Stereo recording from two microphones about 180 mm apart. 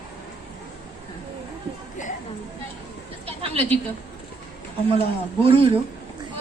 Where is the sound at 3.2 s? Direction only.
35° right (ahead or behind).